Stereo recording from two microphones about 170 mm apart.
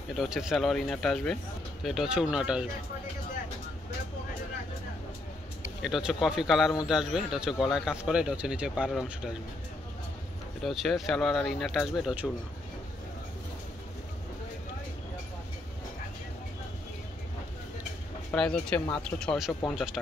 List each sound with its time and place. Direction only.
0.1 s speech: centre (ahead or behind)
5.8 s speech: centre (ahead or behind)
10.6 s speech: centre (ahead or behind)
18.3 s speech: 5° left (ahead or behind)